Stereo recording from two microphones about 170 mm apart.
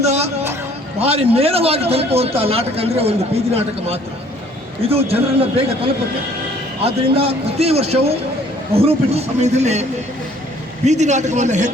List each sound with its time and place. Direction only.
0.0 s a sound: 40° right (ahead or behind)
0.9 s a man's voice: 35° right (ahead or behind)
7.2 s a man's voice: 35° right (ahead or behind)
10.8 s a man's voice: 45° right (ahead or behind)